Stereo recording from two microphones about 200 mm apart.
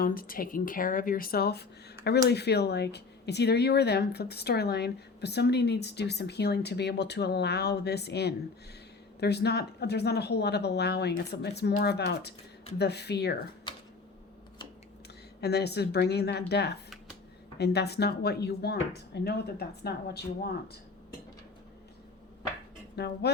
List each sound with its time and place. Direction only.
0.0 s a woman's voice: 45° left (ahead or behind)
15.4 s a woman's voice: 55° left (ahead or behind)
23.0 s a woman's voice: 55° left (ahead or behind)